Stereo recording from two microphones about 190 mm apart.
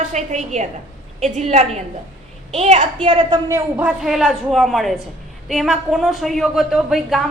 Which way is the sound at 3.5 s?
10° right (ahead or behind).